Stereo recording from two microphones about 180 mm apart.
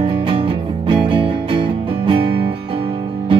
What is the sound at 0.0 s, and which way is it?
Music, 30° right (ahead or behind).